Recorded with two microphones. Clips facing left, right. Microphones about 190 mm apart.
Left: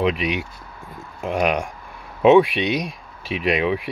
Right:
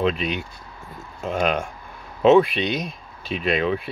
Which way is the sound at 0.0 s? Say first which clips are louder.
Left 2 dB; 10° left (ahead or behind).